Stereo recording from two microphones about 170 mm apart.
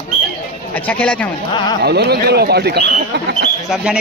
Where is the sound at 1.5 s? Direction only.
25° left (ahead or behind).